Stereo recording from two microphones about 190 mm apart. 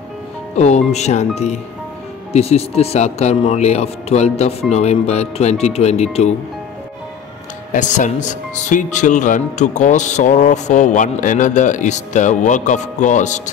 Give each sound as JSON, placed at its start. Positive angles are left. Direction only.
{"t": 0.6, "sound": "speech", "side_deg": 35}
{"t": 7.7, "sound": "speech", "side_deg": 40}